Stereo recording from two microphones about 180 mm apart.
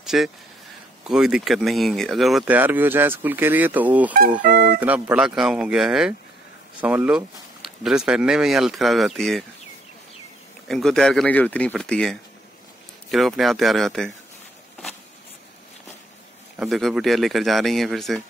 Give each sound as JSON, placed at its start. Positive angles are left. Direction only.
{"t": 0.0, "sound": "a sound", "side_deg": 0}
{"t": 1.0, "sound": "speech", "side_deg": -5}
{"t": 4.4, "sound": "speech", "side_deg": -50}
{"t": 4.7, "sound": "speech", "side_deg": -10}
{"t": 10.7, "sound": "speech", "side_deg": 5}
{"t": 16.5, "sound": "speech", "side_deg": 0}